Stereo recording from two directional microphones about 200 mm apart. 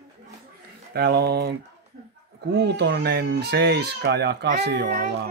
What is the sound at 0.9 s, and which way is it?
Speech, 55° right (ahead or behind).